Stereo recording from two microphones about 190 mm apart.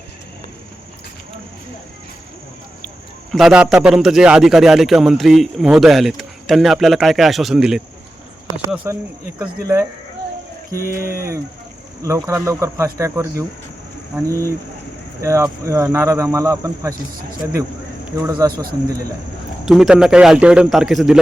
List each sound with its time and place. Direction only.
3.3 s a man's voice: 5° right (ahead or behind)
10.8 s speech: 15° right (ahead or behind)
19.6 s a man's voice: centre (ahead or behind)